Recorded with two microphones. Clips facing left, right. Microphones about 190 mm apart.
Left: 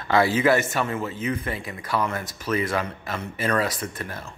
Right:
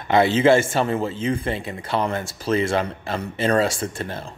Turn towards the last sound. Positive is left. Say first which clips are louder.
# right 4 dB
turn(degrees=-30)  # may be behind; listen again after turning